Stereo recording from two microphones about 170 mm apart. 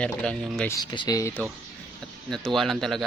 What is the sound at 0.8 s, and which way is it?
Speech, 25° left (ahead or behind).